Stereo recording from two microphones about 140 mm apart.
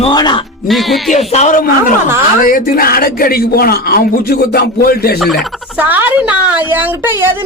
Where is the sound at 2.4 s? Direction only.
85° left.